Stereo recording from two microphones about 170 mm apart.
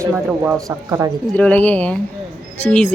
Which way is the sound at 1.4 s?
10° left (ahead or behind).